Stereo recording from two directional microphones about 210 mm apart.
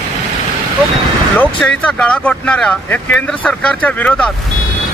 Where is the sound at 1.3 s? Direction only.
5° left (ahead or behind).